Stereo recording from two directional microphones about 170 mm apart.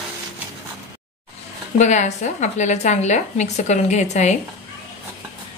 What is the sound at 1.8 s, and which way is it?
A woman's voice, 45° left (ahead or behind).